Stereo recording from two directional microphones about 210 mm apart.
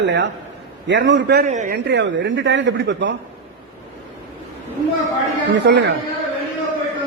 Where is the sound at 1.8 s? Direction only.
55° right (ahead or behind).